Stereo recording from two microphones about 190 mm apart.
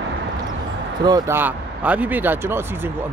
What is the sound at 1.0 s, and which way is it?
Speech, 15° right (ahead or behind).